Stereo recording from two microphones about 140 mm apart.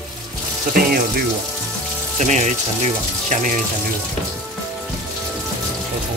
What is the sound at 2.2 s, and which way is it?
Speech, 55° right (ahead or behind).